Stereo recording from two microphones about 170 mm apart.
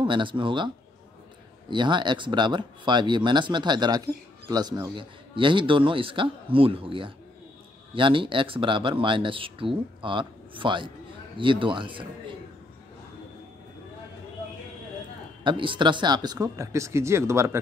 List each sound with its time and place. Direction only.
0.0 s speech: 30° right (ahead or behind)
1.7 s speech: 25° right (ahead or behind)
15.4 s speech: 30° right (ahead or behind)